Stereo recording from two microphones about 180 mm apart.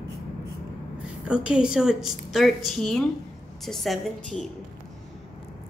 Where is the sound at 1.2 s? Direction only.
5° right (ahead or behind).